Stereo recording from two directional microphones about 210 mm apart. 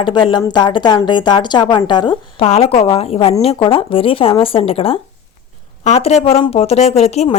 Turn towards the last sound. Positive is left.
turn(degrees=30)  # may be behind; listen again after turning